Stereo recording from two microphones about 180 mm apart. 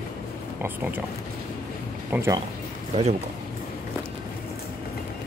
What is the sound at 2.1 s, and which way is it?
Speech, 15° right (ahead or behind).